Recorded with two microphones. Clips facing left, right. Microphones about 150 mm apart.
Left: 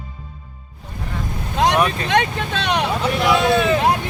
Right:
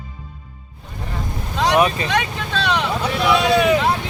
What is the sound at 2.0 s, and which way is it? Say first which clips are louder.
Speech: left 3 dB; 55° left (ahead or behind).